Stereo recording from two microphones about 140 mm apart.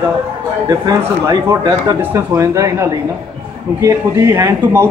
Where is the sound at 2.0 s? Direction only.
15° right (ahead or behind).